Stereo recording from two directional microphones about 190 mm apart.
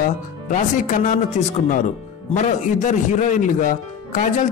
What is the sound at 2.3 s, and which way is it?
Speech, 40° left (ahead or behind).